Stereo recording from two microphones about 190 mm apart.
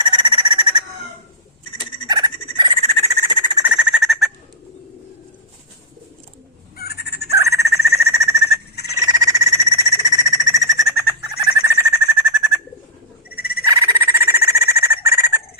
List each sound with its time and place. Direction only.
0.0 s frog: 25° right (ahead or behind)
3.7 s bird: 5° right (ahead or behind)
6.7 s bird: 55° left (ahead or behind)
7.3 s a sound: 15° right (ahead or behind)
9.0 s frog: 20° right (ahead or behind)
13.3 s frog: 55° left (ahead or behind)
13.7 s a sound: 20° right (ahead or behind)